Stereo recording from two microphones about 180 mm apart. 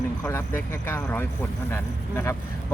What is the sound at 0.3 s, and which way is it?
Speech, 15° left (ahead or behind).